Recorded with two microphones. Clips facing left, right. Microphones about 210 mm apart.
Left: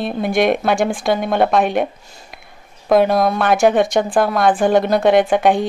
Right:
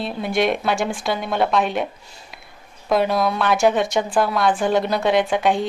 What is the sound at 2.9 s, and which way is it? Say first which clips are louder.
A woman's voice: left 5 dB; 50° left (ahead or behind).